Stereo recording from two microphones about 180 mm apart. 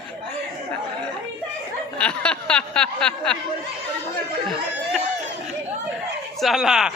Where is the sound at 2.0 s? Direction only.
5° left (ahead or behind).